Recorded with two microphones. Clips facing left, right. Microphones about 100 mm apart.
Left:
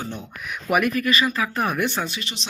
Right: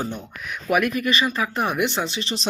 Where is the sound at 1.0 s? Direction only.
25° right (ahead or behind).